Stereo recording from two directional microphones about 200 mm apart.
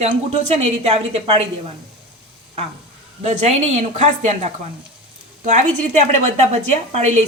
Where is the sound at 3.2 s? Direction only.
35° right (ahead or behind).